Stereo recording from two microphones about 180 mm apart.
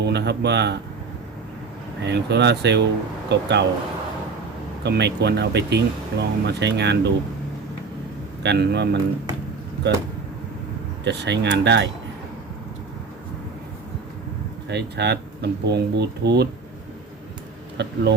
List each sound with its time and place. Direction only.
0.0 s speech: 70° right (ahead or behind)
2.0 s speech: 70° right (ahead or behind)
4.8 s speech: 70° right (ahead or behind)
8.4 s speech: 70° right (ahead or behind)
11.0 s speech: 70° right (ahead or behind)
14.7 s speech: 70° right (ahead or behind)
17.8 s speech: 70° right (ahead or behind)